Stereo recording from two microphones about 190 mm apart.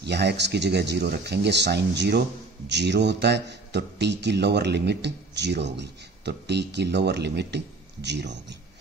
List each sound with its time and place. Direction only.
0.0 s speech: 60° right (ahead or behind)